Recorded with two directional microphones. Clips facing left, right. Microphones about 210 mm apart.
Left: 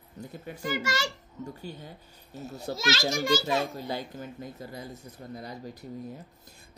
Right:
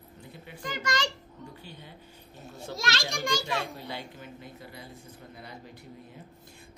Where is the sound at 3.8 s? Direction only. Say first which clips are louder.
Left 5 dB; 40° left (ahead or behind).